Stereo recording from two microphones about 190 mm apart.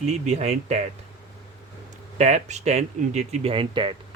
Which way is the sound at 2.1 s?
35° right (ahead or behind).